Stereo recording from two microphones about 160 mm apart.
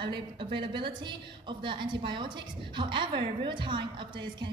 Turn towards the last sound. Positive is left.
turn(degrees=-30)  # may be behind; listen again after turning